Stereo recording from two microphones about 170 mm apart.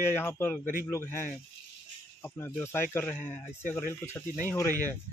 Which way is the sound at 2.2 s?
15° left (ahead or behind).